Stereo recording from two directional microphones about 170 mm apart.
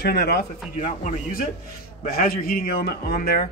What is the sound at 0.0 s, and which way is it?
Speech, 70° left (ahead or behind).